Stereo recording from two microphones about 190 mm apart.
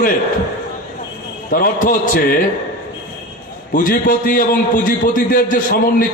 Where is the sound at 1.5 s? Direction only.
50° left (ahead or behind).